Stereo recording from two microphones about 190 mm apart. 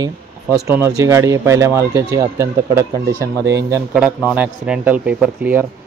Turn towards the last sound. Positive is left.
turn(degrees=-5)  # may be behind; listen again after turning